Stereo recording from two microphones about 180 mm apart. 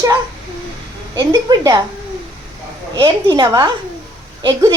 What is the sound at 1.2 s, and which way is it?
Speech, 20° right (ahead or behind).